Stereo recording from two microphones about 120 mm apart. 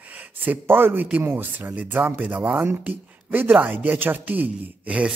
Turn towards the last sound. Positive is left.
turn(degrees=-10)  # may be behind; listen again after turning